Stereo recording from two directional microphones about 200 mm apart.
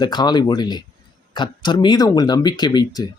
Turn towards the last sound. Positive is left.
turn(degrees=20)  # may be behind; listen again after turning